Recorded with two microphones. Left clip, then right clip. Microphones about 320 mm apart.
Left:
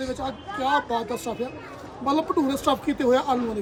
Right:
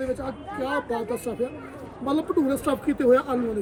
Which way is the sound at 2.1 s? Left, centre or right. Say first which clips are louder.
Left 1 dB; centre.